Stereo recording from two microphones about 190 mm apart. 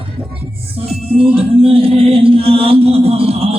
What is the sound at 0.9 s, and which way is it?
Music, 30° right (ahead or behind).